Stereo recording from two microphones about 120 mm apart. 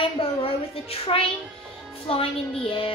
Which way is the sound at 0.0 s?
50° left (ahead or behind).